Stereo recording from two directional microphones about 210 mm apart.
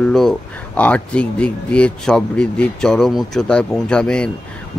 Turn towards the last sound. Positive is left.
turn(degrees=5)  # may be behind; listen again after turning